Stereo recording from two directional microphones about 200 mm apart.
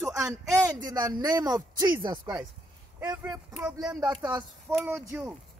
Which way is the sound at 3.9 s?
20° right (ahead or behind).